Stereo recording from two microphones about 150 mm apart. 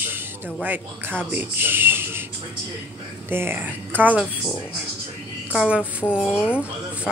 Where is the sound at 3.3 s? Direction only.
15° right (ahead or behind).